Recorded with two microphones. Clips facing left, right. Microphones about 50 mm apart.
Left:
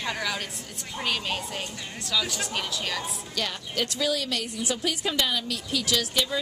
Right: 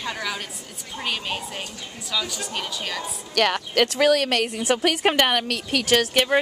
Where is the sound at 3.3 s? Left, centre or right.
Right.